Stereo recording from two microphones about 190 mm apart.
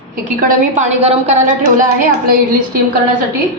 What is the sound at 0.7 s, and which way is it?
A woman's voice, 35° right (ahead or behind).